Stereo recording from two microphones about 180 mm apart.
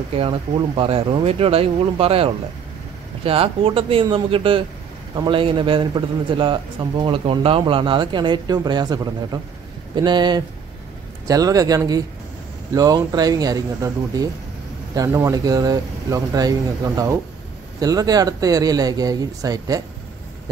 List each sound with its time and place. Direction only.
0.1 s a man's voice: 30° right (ahead or behind)